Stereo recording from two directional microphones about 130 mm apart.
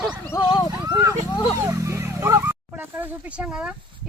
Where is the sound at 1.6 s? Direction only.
20° right (ahead or behind).